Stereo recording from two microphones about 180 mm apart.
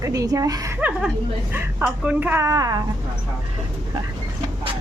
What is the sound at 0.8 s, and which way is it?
Speech, 5° right (ahead or behind).